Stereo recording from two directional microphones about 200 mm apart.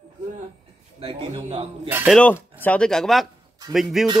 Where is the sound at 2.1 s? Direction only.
10° left (ahead or behind).